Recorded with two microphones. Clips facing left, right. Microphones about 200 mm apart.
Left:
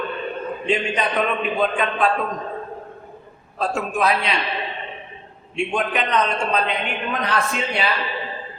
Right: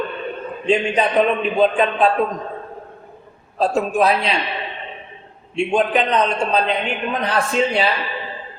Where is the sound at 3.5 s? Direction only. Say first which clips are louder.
Right 5 dB; 35° right (ahead or behind).